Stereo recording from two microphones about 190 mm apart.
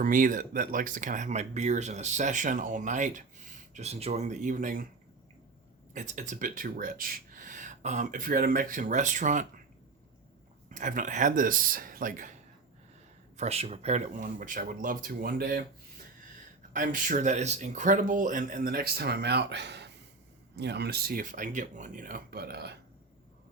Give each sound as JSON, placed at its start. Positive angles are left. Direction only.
{"t": 0.0, "sound": "speech", "side_deg": -45}
{"t": 5.9, "sound": "speech", "side_deg": -40}
{"t": 10.7, "sound": "speech", "side_deg": -40}
{"t": 13.3, "sound": "speech", "side_deg": -35}
{"t": 16.7, "sound": "speech", "side_deg": -45}